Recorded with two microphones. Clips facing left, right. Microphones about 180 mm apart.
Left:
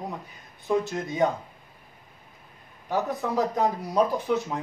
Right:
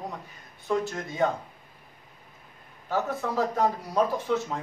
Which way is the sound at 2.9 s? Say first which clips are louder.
Left 2 dB; 15° left (ahead or behind).